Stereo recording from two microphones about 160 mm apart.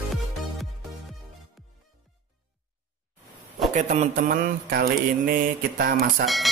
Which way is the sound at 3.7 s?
50° right (ahead or behind).